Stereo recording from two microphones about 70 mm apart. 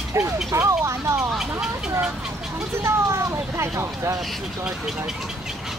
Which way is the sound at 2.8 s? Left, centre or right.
Right.